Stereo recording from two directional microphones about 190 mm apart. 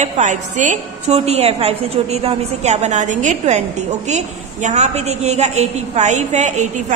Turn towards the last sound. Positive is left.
turn(degrees=-40)  # may be behind; listen again after turning